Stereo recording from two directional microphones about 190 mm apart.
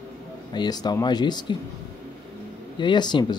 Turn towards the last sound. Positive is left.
turn(degrees=20)  # may be behind; listen again after turning